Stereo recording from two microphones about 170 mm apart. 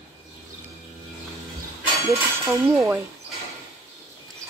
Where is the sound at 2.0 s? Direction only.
15° right (ahead or behind).